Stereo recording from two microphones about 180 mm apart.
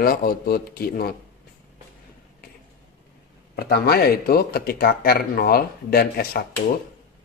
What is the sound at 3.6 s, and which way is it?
Speech, 60° left (ahead or behind).